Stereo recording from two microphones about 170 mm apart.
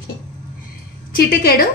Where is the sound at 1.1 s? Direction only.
60° left (ahead or behind).